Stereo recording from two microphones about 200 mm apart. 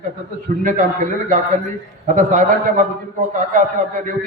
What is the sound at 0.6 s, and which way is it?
A man's voice, 40° right (ahead or behind).